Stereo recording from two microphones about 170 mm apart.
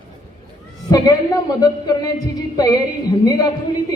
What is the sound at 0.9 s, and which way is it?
Speech, 20° left (ahead or behind).